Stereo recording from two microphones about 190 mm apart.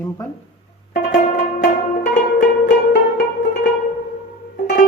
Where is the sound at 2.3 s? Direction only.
60° left (ahead or behind).